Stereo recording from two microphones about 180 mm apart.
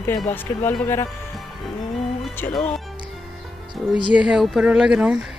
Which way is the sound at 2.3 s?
10° left (ahead or behind).